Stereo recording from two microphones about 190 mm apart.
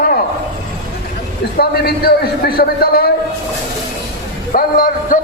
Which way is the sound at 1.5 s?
55° left (ahead or behind).